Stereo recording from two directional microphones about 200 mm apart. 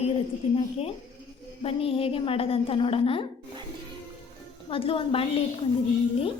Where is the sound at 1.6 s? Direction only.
30° left (ahead or behind).